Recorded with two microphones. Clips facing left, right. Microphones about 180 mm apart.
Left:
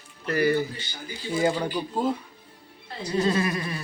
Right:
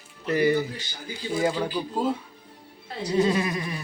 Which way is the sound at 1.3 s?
Centre (ahead or behind).